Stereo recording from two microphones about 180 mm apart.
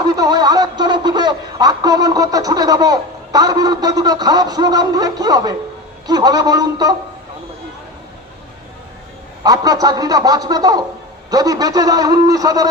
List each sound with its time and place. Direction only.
0.2 s a man's voice: 20° right (ahead or behind)
9.4 s a man's voice: 20° right (ahead or behind)